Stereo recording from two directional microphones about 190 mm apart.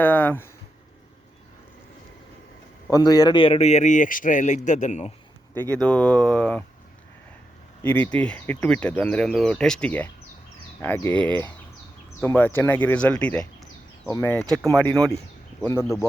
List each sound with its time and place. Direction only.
0.0 s speech: 10° left (ahead or behind)
2.8 s a man's voice: 20° left (ahead or behind); by 5.1 s 40° left (ahead or behind)
5.5 s speech: 10° left (ahead or behind)
7.9 s speech: 10° left (ahead or behind)